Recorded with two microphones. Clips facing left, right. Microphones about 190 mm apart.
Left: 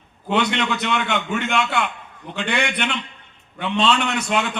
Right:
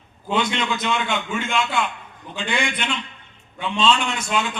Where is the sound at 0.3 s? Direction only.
65° left (ahead or behind).